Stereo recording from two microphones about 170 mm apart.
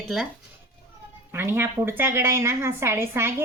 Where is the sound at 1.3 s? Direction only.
15° right (ahead or behind).